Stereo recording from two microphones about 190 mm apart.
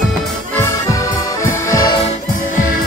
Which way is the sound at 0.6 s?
15° left (ahead or behind).